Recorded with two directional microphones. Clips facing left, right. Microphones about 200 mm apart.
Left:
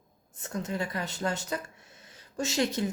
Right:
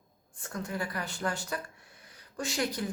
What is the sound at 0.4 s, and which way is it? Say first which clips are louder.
Speech: left 3 dB; 20° left (ahead or behind).